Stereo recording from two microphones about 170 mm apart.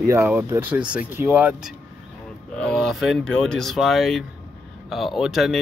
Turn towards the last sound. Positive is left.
turn(degrees=0)  # may be behind; listen again after turning